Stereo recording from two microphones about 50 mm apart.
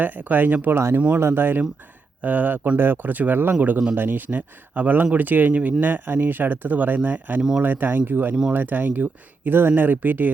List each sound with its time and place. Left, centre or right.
0.0 s speech: right
0.7 s speech: right
1.2 s speech: right